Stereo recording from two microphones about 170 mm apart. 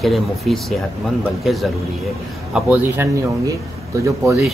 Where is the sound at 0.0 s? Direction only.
Centre (ahead or behind).